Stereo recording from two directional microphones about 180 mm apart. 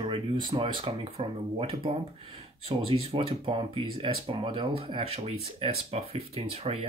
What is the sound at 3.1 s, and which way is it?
Speech, 30° right (ahead or behind).